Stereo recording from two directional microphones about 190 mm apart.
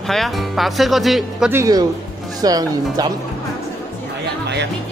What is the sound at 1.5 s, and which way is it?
A man's voice, 20° right (ahead or behind).